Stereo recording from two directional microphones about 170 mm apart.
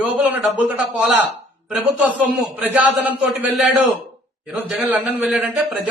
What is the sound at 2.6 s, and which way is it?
Speech, 10° right (ahead or behind).